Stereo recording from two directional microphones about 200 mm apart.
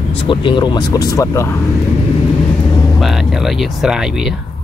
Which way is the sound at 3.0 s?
Centre (ahead or behind).